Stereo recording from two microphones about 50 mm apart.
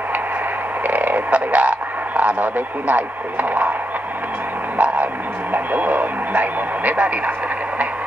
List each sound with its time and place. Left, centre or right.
0.8 s radio: right
4.7 s a sound: right
5.5 s speech: right